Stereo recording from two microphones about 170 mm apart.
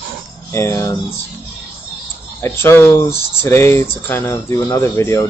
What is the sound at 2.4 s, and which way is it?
Speech, 15° left (ahead or behind).